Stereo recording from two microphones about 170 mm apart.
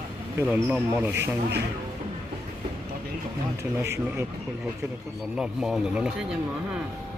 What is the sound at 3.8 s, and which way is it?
Speech, 15° right (ahead or behind).